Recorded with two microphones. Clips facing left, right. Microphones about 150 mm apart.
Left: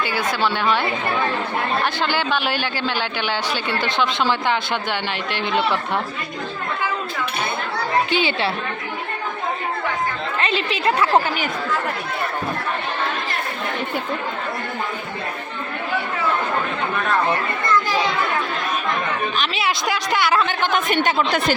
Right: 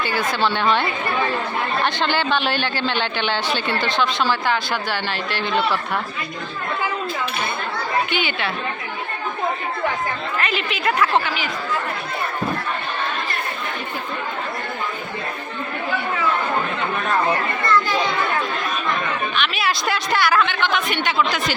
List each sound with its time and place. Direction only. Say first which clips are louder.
0.0 s speech: even; 10° left (ahead or behind)
8.1 s a woman's voice: left 3 dB; 30° left (ahead or behind)
10.4 s a woman's voice: left 3 dB; 30° left (ahead or behind)
19.4 s a sound: right 2 dB; 25° left (ahead or behind)
20.1 s a woman's voice: even; 20° left (ahead or behind)
20.4 s a woman's voice: even; 45° left (ahead or behind)